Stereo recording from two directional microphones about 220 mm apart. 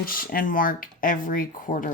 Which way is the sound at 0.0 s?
40° left (ahead or behind).